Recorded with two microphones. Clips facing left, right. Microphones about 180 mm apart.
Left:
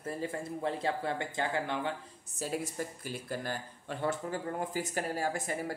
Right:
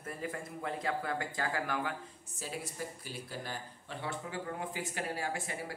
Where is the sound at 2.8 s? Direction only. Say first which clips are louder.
Left 4 dB; 45° left (ahead or behind).